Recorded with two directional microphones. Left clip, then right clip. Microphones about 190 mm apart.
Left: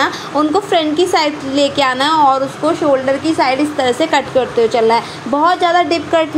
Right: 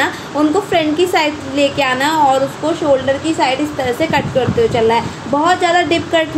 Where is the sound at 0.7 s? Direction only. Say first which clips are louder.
Left 1 dB; 20° left (ahead or behind).